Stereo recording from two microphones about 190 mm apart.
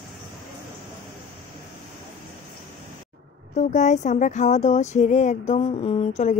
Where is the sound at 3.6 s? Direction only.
40° left (ahead or behind).